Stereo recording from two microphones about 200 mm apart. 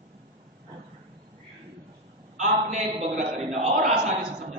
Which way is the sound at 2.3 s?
35° right (ahead or behind).